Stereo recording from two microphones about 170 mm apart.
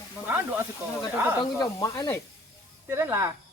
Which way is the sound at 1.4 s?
20° left (ahead or behind).